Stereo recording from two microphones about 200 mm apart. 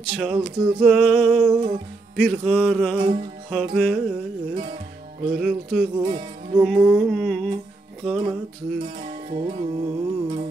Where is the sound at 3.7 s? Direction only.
Centre (ahead or behind).